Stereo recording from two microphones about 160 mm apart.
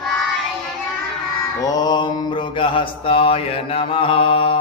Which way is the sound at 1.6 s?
25° left (ahead or behind).